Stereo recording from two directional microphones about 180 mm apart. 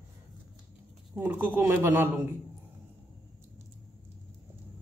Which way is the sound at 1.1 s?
10° right (ahead or behind).